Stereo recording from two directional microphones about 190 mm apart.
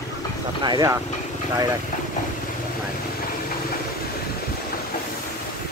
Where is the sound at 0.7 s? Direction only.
20° right (ahead or behind).